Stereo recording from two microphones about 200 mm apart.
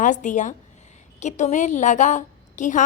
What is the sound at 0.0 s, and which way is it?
A woman's voice, 40° left (ahead or behind).